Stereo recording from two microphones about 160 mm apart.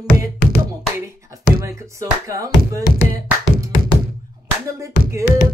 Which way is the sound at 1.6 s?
20° right (ahead or behind).